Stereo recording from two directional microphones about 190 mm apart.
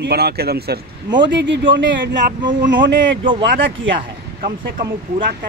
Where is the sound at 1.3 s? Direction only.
70° right (ahead or behind).